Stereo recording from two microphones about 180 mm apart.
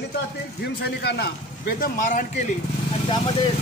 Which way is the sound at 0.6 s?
65° left (ahead or behind).